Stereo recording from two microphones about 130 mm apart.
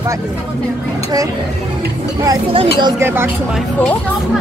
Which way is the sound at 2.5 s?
40° right (ahead or behind).